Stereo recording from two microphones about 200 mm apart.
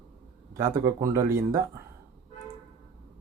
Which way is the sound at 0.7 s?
15° right (ahead or behind).